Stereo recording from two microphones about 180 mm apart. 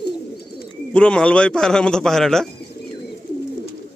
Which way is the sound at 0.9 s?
5° left (ahead or behind).